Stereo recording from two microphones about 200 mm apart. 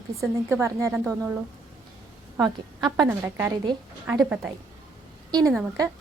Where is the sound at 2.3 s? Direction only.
20° right (ahead or behind).